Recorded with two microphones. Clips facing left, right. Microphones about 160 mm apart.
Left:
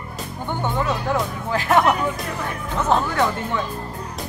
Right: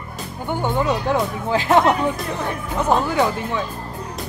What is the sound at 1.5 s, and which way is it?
Speech, 20° right (ahead or behind).